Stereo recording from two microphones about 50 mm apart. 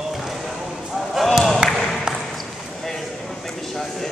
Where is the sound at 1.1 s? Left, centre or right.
Centre.